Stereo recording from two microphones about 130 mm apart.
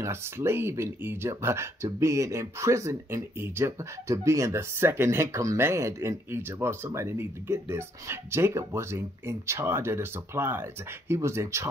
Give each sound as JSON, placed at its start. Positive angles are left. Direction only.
{"t": 0.0, "sound": "speech", "side_deg": -20}